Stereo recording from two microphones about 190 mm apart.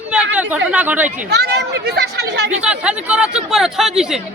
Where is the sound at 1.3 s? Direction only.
60° right (ahead or behind).